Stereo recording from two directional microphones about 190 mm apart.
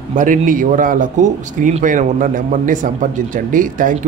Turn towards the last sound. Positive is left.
turn(degrees=-45)  # may be behind; listen again after turning